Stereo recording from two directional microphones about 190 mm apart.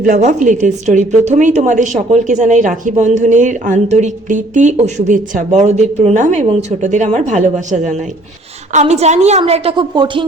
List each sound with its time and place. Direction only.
0.0 s a woman's voice: 45° right (ahead or behind); by 10.2 s 25° right (ahead or behind)